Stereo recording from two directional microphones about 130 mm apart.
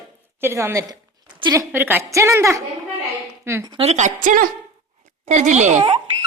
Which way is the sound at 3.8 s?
60° right (ahead or behind).